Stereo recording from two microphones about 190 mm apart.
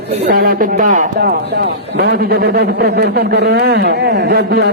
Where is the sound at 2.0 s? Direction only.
55° right (ahead or behind).